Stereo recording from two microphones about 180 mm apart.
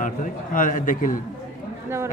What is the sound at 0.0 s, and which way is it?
A man's voice, 45° left (ahead or behind).